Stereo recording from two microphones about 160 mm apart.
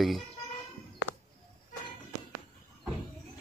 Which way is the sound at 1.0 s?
90° left.